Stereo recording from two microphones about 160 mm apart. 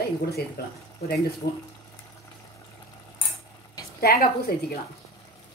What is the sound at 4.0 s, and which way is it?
Speech, 75° left (ahead or behind).